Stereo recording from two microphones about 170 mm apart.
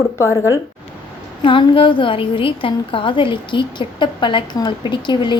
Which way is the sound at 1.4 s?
30° left (ahead or behind).